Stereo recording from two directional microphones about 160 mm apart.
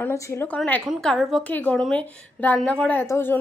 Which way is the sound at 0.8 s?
Centre (ahead or behind).